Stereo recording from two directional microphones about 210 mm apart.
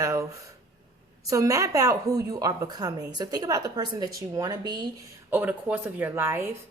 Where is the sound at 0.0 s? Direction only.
15° right (ahead or behind).